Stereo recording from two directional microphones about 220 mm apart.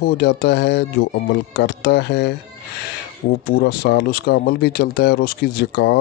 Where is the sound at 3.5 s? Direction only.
45° left (ahead or behind).